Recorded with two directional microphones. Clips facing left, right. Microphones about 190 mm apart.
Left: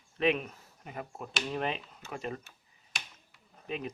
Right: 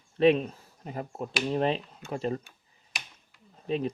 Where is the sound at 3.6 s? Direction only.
35° right (ahead or behind).